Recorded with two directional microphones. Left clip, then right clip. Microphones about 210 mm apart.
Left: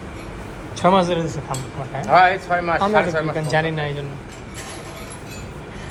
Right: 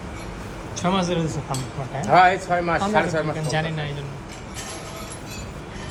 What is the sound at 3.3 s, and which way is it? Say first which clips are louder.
Speech: left 5 dB; 10° right (ahead or behind).